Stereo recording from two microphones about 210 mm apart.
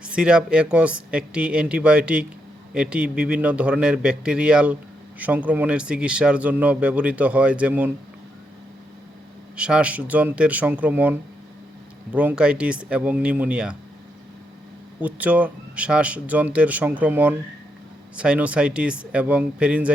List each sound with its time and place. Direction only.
0.0 s a man's voice: 5° right (ahead or behind)
9.6 s a man's voice: 5° right (ahead or behind)
15.0 s a man's voice: 5° right (ahead or behind)